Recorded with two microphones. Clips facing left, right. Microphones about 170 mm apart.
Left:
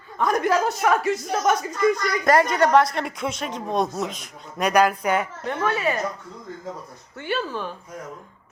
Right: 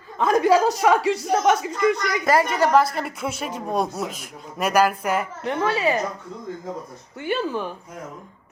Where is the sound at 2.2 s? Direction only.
5° right (ahead or behind).